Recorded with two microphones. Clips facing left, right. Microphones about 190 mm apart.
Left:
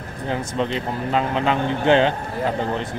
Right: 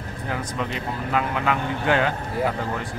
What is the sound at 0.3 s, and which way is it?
Speech, 30° left (ahead or behind).